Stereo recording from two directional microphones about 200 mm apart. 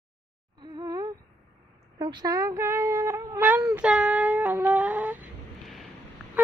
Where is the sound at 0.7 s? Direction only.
20° right (ahead or behind).